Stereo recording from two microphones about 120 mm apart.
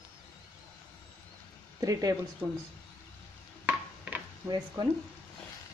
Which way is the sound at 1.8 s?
30° right (ahead or behind).